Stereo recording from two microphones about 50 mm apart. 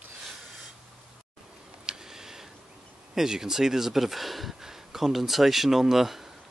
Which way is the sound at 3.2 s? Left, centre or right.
Centre.